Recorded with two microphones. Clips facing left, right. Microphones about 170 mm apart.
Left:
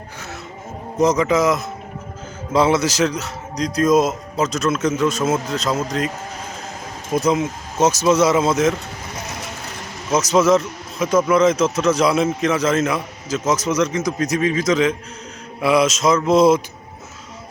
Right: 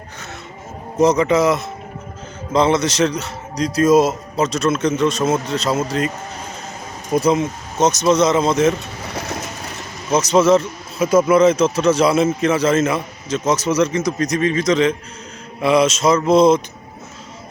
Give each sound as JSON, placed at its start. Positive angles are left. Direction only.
{"t": 0.9, "sound": "speech", "side_deg": 0}
{"t": 7.1, "sound": "speech", "side_deg": 0}
{"t": 10.1, "sound": "speech", "side_deg": 0}